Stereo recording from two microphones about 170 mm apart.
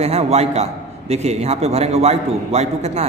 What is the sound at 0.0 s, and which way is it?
A man's voice, 40° right (ahead or behind).